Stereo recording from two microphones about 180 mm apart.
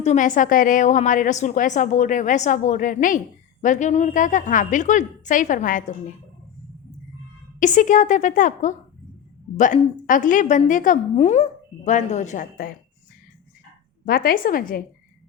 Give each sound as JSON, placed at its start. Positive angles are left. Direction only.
{"t": 0.0, "sound": "a woman's voice", "side_deg": 40}
{"t": 7.6, "sound": "a woman's voice", "side_deg": 45}
{"t": 14.0, "sound": "a woman's voice", "side_deg": 55}